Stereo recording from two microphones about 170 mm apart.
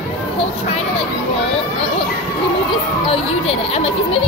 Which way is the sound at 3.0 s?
35° left (ahead or behind).